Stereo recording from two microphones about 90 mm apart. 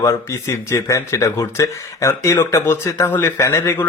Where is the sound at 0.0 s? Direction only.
35° left (ahead or behind).